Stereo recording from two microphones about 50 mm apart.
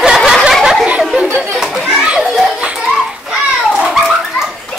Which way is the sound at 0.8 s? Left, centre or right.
Right.